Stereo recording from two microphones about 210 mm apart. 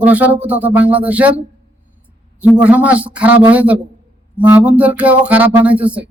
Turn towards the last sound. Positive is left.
turn(degrees=-5)  # may be behind; listen again after turning